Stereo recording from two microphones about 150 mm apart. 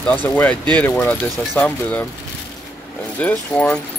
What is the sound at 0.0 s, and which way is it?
Speech, 10° left (ahead or behind).